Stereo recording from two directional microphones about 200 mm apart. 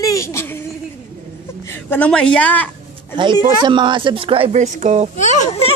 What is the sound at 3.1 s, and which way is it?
Speech, 25° right (ahead or behind).